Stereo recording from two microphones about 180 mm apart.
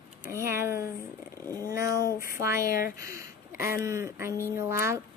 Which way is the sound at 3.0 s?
15° right (ahead or behind).